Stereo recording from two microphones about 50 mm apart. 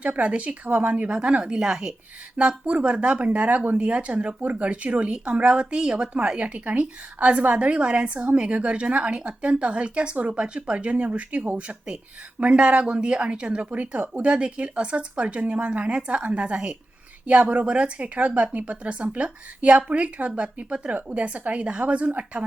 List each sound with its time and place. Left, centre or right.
0.0 s speech: right